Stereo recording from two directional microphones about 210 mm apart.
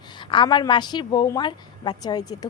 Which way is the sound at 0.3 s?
20° left (ahead or behind).